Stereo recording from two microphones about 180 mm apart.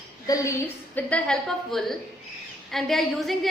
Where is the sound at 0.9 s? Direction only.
5° left (ahead or behind).